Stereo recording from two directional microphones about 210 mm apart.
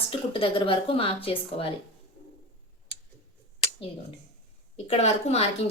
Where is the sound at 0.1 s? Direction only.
25° left (ahead or behind).